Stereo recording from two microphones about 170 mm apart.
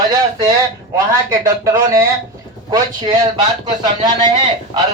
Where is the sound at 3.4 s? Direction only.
25° right (ahead or behind).